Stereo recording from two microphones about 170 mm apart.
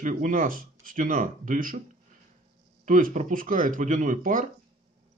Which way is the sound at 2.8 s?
50° right (ahead or behind).